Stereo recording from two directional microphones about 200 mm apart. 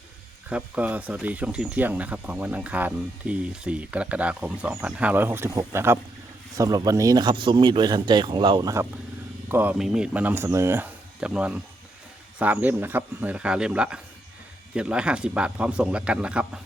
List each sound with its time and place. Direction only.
0.5 s speech: 5° right (ahead or behind)